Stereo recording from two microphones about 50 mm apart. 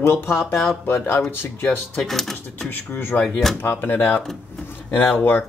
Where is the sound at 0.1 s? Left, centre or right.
Left.